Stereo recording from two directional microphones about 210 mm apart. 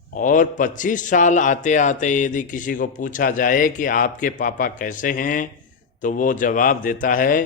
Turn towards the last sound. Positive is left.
turn(degrees=40)  # may be behind; listen again after turning